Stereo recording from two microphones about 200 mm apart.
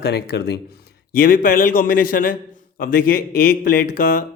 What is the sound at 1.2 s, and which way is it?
Speech, 45° left (ahead or behind).